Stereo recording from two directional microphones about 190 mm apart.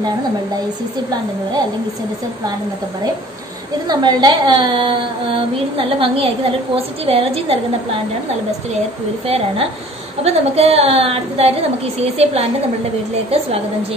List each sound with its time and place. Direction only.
3.8 s a woman's voice: 20° right (ahead or behind)
9.2 s a woman's voice: 30° right (ahead or behind)